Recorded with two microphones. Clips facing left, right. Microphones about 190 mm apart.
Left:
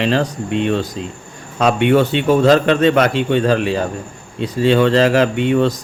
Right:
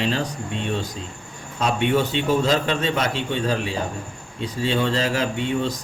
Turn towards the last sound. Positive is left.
turn(degrees=75)  # may be behind; listen again after turning